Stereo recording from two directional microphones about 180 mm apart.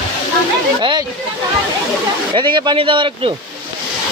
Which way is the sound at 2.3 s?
25° right (ahead or behind).